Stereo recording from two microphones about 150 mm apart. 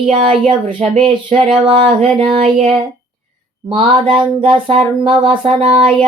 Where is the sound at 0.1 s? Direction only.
35° right (ahead or behind).